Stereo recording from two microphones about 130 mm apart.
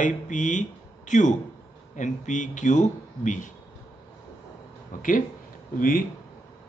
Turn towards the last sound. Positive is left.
turn(degrees=90)